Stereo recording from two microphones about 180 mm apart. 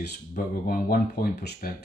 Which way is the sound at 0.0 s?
55° left (ahead or behind).